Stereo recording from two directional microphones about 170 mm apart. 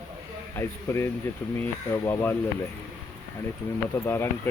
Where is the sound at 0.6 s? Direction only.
15° left (ahead or behind).